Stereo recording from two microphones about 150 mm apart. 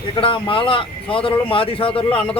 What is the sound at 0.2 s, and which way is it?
Speech, 35° left (ahead or behind).